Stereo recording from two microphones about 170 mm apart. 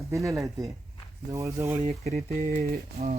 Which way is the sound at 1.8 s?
40° right (ahead or behind).